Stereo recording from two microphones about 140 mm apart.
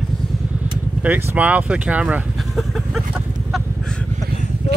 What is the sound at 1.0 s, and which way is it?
Speech, 10° right (ahead or behind).